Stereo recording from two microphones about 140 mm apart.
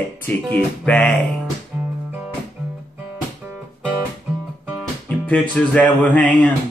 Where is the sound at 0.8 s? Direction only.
10° left (ahead or behind).